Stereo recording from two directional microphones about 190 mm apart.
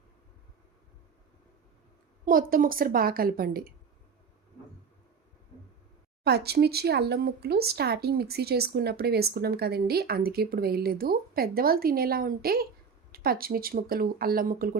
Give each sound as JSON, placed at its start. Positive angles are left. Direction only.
{"t": 2.2, "sound": "speech", "side_deg": -45}
{"t": 6.2, "sound": "speech", "side_deg": -55}